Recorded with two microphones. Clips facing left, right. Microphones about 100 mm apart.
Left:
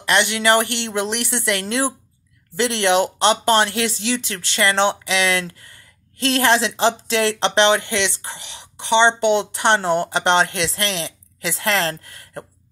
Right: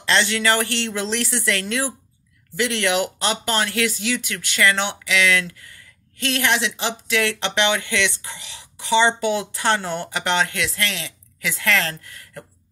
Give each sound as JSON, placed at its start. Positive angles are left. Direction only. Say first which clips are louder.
{"t": 0.0, "sound": "speech", "louder": "left 2 dB", "side_deg": 20}